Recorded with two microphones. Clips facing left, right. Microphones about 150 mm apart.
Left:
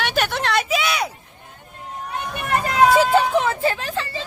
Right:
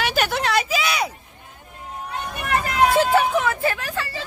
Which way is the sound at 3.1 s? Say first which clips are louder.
Left 1 dB; 25° left (ahead or behind).